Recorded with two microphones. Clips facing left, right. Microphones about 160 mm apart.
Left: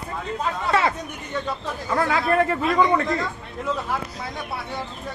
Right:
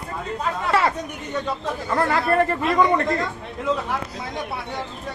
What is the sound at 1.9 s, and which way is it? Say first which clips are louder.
Speech: right 1 dB; centre (ahead or behind).